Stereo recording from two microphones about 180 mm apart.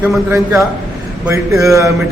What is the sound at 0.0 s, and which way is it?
A man's voice, 10° right (ahead or behind).